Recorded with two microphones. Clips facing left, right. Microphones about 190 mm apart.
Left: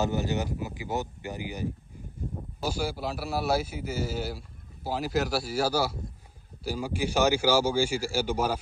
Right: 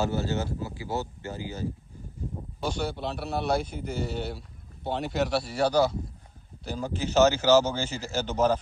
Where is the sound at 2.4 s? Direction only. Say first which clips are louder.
Even; 5° left (ahead or behind).